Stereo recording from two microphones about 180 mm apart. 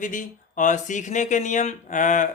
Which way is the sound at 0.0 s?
45° left (ahead or behind).